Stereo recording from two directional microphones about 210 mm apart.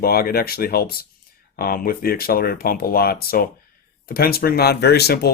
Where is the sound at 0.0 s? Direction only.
45° left (ahead or behind).